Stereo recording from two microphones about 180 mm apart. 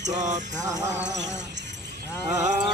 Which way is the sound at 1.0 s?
75° right (ahead or behind).